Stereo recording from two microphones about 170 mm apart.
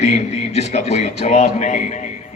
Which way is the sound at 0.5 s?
40° left (ahead or behind).